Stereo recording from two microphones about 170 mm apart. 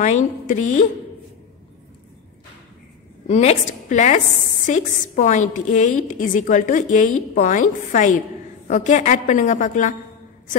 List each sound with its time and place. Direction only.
0.0 s a woman's voice: 45° left (ahead or behind)
3.3 s a woman's voice: 40° left (ahead or behind)